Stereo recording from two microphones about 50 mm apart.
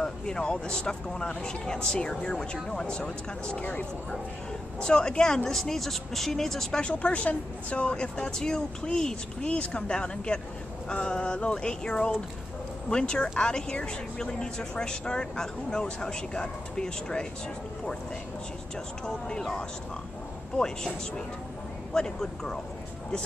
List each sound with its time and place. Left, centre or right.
0.0 s a woman's voice: centre
4.7 s speech: centre
6.8 s a woman's voice: left
19.0 s speech: centre
21.9 s speech: centre